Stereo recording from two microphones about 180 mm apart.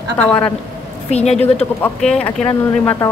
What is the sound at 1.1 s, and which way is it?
Speech, 35° left (ahead or behind).